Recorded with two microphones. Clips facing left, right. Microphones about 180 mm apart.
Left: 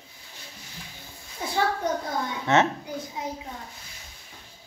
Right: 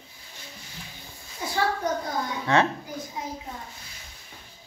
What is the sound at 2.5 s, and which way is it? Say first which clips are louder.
Speech: left 1 dB; 25° left (ahead or behind).